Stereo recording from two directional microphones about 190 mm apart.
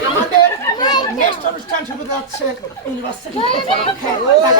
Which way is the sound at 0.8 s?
20° left (ahead or behind).